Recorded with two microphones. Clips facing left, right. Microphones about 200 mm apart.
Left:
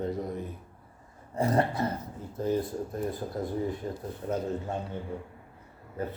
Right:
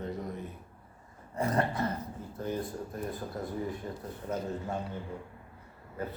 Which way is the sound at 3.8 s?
30° left (ahead or behind).